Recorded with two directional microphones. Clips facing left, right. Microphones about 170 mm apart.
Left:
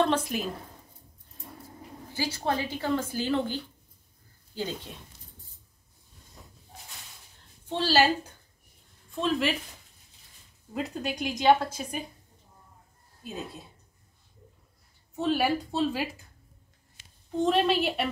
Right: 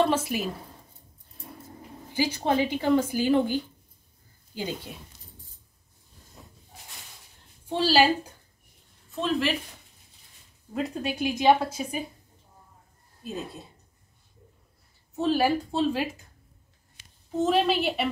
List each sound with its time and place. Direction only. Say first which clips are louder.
0.0 s a woman's voice: right 2 dB; 5° right (ahead or behind)
2.1 s a woman's voice: right 5 dB; 15° right (ahead or behind)
7.6 s a woman's voice: right 2 dB; 10° right (ahead or behind)
9.1 s speech: right 1 dB; centre (ahead or behind)
10.7 s speech: right 2 dB; centre (ahead or behind)
15.1 s speech: right 2 dB; centre (ahead or behind)
17.4 s speech: right 1 dB; centre (ahead or behind)